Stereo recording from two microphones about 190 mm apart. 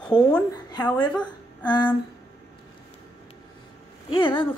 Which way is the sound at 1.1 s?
5° left (ahead or behind).